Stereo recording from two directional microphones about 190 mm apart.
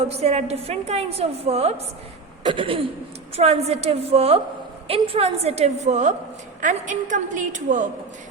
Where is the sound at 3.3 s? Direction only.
35° right (ahead or behind).